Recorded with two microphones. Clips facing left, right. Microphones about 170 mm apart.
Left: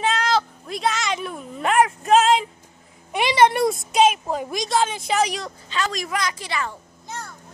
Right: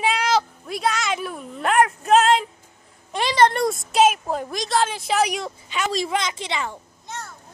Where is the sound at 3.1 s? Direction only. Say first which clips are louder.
Left 1 dB; 10° left (ahead or behind).